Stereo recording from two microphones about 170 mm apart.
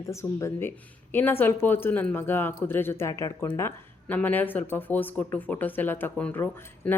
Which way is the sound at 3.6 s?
15° left (ahead or behind).